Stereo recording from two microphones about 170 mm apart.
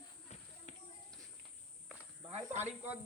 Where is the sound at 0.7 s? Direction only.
45° left (ahead or behind).